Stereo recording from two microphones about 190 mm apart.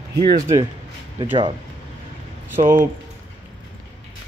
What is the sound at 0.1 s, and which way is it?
Speech, 55° right (ahead or behind).